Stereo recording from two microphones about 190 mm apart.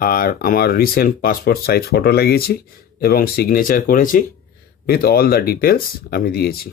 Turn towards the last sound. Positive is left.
turn(degrees=55)  # may be behind; listen again after turning